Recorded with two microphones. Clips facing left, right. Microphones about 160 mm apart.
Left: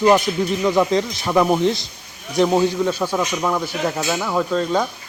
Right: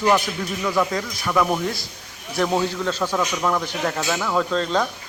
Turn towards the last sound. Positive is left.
turn(degrees=10)  # may be behind; listen again after turning